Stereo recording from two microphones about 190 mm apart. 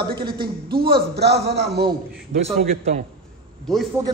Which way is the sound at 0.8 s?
60° right (ahead or behind).